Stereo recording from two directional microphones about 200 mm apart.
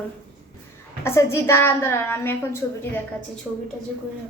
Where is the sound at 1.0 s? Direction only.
15° left (ahead or behind).